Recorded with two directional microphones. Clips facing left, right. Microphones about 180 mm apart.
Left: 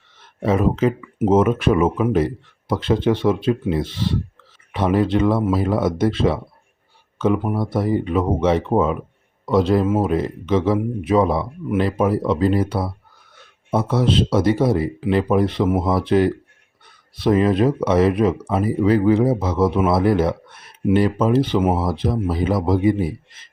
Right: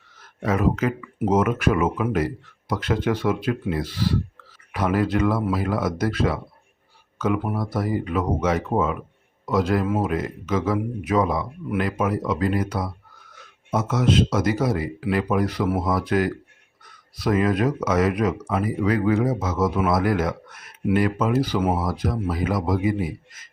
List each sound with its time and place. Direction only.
0.2 s speech: 25° left (ahead or behind)